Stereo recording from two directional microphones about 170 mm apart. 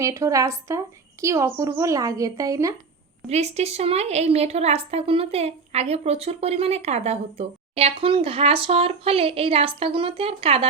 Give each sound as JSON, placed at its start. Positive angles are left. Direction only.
{"t": 0.0, "sound": "a woman's voice", "side_deg": -15}
{"t": 3.2, "sound": "a woman's voice", "side_deg": -40}